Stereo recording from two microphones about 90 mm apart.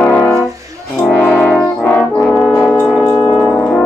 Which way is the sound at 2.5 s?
35° left (ahead or behind).